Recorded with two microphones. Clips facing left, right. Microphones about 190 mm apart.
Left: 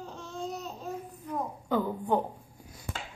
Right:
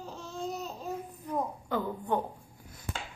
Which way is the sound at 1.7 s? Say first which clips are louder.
Left 3 dB; 10° left (ahead or behind).